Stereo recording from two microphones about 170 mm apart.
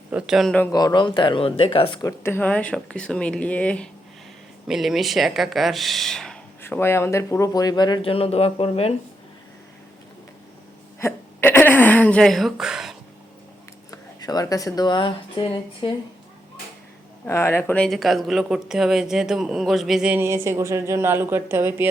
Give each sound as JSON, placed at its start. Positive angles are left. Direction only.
{"t": 0.1, "sound": "speech", "side_deg": -5}
{"t": 0.7, "sound": "speech", "side_deg": 20}
{"t": 2.2, "sound": "speech", "side_deg": 10}
{"t": 6.6, "sound": "speech", "side_deg": 15}
{"t": 11.0, "sound": "hiccup", "side_deg": 15}
{"t": 13.9, "sound": "speech", "side_deg": 20}
{"t": 17.2, "sound": "speech", "side_deg": 15}